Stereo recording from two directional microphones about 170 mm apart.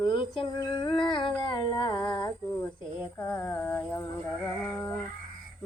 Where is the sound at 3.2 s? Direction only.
20° left (ahead or behind).